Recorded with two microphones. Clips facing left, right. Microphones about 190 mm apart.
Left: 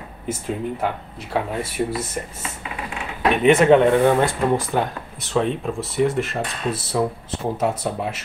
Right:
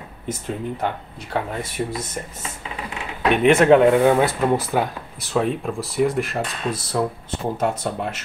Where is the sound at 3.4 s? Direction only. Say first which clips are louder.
Even; centre (ahead or behind).